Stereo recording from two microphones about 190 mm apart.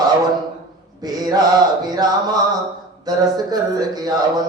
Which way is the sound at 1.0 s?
20° right (ahead or behind).